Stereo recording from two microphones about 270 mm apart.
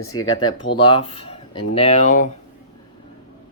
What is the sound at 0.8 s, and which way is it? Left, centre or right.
Speech, centre.